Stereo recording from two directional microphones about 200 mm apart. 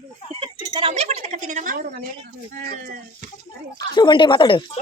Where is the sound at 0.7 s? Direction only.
25° right (ahead or behind); by 3.3 s 40° right (ahead or behind).